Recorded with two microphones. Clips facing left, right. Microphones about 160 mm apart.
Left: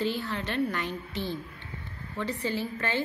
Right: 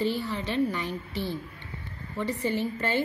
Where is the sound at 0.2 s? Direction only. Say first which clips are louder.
Right 2 dB; 10° right (ahead or behind).